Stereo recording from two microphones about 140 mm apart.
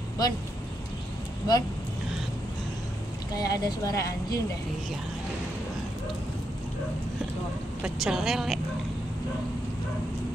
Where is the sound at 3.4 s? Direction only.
25° left (ahead or behind).